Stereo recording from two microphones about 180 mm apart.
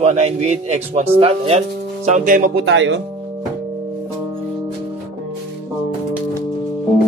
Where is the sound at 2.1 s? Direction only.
45° right (ahead or behind).